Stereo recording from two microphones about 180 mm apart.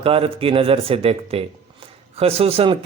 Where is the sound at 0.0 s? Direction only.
30° right (ahead or behind).